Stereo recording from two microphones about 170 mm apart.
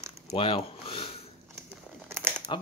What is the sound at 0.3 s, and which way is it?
Speech, 30° left (ahead or behind).